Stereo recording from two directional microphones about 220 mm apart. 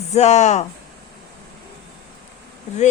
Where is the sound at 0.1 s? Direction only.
30° left (ahead or behind).